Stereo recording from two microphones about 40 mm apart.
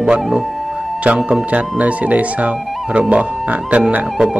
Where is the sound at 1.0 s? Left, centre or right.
Right.